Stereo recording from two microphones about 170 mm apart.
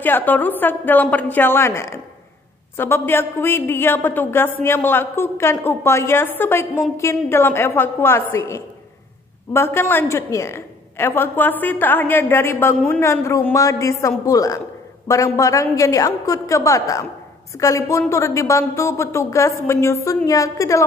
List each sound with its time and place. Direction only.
0.0 s a woman's voice: 10° left (ahead or behind)